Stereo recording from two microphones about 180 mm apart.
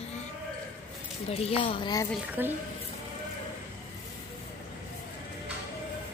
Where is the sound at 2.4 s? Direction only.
10° right (ahead or behind).